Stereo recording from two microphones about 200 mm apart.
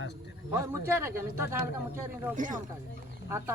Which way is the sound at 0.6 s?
15° right (ahead or behind).